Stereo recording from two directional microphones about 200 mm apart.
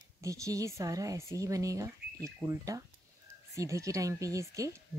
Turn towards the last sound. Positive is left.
turn(degrees=-15)  # may be behind; listen again after turning